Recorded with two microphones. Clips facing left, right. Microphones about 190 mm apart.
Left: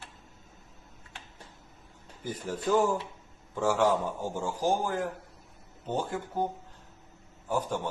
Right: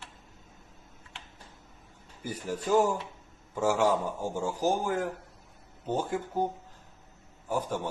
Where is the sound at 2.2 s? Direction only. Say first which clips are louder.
Even; 10° right (ahead or behind).